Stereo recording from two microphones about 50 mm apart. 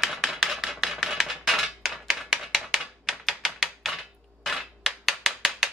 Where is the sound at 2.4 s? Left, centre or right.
Centre.